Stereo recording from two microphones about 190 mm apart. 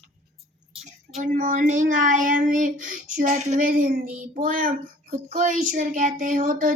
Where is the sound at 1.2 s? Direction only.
45° right (ahead or behind).